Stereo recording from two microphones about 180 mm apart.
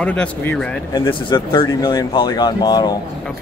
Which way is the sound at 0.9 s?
25° left (ahead or behind).